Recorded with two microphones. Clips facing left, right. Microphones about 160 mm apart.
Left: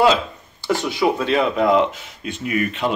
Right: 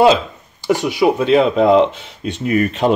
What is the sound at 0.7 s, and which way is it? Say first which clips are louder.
Speech: right 4 dB; 15° right (ahead or behind).